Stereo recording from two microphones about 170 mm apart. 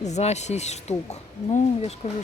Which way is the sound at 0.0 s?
40° left (ahead or behind).